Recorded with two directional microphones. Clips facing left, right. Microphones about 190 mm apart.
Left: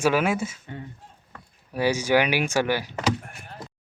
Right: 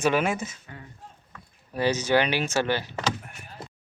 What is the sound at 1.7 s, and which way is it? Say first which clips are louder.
Speech: left 1 dB; 10° left (ahead or behind).